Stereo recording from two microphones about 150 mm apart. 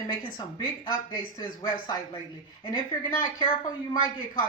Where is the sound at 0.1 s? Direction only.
30° left (ahead or behind).